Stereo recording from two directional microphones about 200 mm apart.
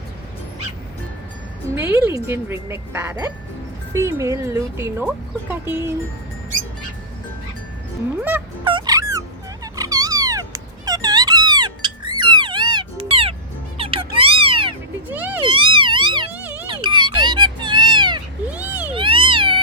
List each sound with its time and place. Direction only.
1.7 s speech: 10° right (ahead or behind)
8.6 s music: 20° right (ahead or behind)
9.7 s dog: 15° right (ahead or behind)
12.2 s music: 20° right (ahead or behind)
15.1 s a sound: 10° right (ahead or behind)
15.4 s music: 25° right (ahead or behind)
16.3 s music: 10° right (ahead or behind)
16.6 s music: 25° right (ahead or behind)
18.5 s a sound: 5° right (ahead or behind)
18.9 s cat: 25° right (ahead or behind)